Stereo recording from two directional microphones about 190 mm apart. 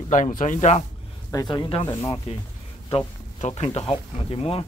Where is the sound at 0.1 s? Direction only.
45° left (ahead or behind).